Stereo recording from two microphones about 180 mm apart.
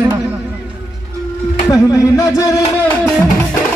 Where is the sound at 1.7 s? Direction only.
20° left (ahead or behind).